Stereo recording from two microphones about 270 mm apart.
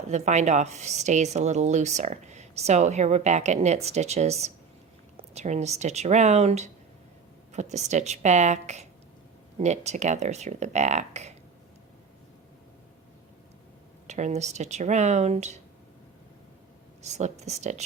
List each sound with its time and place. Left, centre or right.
0.1 s a woman's voice: right
14.1 s a woman's voice: right
17.0 s a woman's voice: right